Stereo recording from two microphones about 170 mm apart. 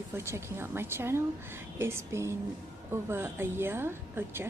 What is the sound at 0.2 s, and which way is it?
Speech, 15° right (ahead or behind).